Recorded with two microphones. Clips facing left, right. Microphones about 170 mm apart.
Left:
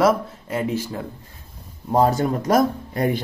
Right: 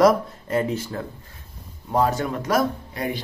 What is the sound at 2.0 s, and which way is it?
Speech, 35° left (ahead or behind).